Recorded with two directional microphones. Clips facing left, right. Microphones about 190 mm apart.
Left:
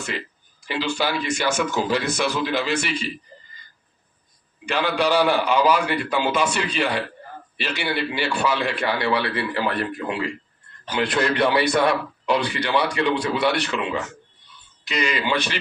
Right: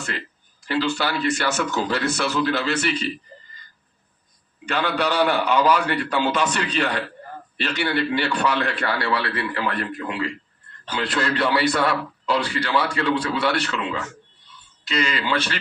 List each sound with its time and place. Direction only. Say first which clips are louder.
0.7 s a man's voice: right 1 dB; 15° left (ahead or behind)
4.6 s a man's voice: left 1 dB; 10° left (ahead or behind); by 10.2 s 30° left (ahead or behind)
10.8 s a man's voice: left 3 dB; 15° left (ahead or behind)